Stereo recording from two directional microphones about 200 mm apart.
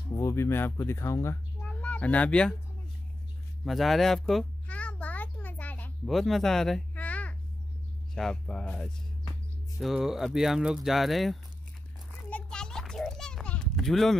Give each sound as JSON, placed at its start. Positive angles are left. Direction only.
{"t": 0.1, "sound": "speech", "side_deg": 15}
{"t": 3.6, "sound": "a sound", "side_deg": 0}
{"t": 8.1, "sound": "speech", "side_deg": 0}
{"t": 12.3, "sound": "children playing", "side_deg": 5}